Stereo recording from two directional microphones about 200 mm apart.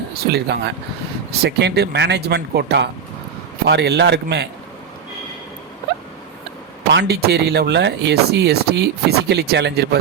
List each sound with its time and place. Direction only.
0.1 s speech: 55° right (ahead or behind)
6.9 s speech: 55° right (ahead or behind)